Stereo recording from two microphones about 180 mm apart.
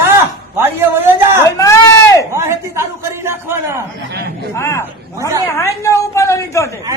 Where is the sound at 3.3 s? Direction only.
15° right (ahead or behind).